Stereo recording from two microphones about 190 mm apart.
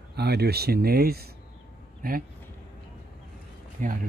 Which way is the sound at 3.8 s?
40° right (ahead or behind).